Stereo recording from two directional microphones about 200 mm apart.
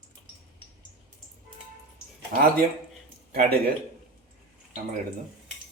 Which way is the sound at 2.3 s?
50° right (ahead or behind).